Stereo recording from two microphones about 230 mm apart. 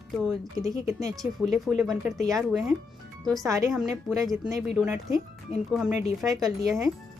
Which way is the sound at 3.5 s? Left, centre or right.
Centre.